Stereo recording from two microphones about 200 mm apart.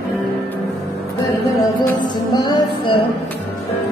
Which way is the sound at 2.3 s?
20° left (ahead or behind).